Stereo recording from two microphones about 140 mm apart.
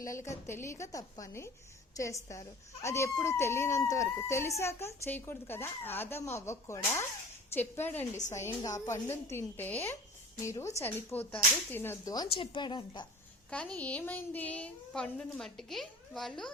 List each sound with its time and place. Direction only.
0.0 s a woman's voice: 20° left (ahead or behind)
12.3 s a woman's voice: 35° left (ahead or behind)
13.5 s a woman's voice: 10° left (ahead or behind)